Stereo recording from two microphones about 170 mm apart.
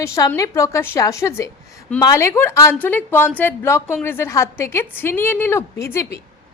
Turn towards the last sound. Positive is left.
turn(degrees=15)  # may be behind; listen again after turning